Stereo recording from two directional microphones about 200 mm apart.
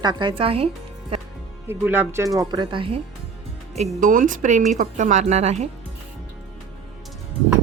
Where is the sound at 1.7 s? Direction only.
10° right (ahead or behind); by 3.0 s 25° right (ahead or behind).